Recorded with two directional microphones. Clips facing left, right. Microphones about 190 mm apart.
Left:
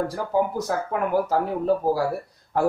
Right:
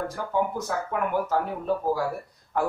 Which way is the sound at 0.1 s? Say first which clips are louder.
Left 3 dB; 35° left (ahead or behind).